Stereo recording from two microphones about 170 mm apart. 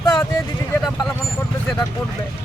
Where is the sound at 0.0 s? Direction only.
20° left (ahead or behind).